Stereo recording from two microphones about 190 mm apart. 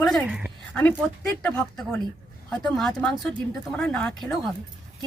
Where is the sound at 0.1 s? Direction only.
Centre (ahead or behind).